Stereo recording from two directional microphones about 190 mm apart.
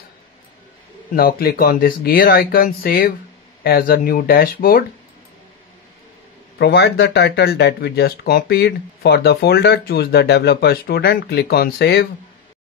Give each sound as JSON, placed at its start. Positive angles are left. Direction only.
{"t": 1.1, "sound": "speech", "side_deg": 55}
{"t": 6.6, "sound": "speech", "side_deg": 60}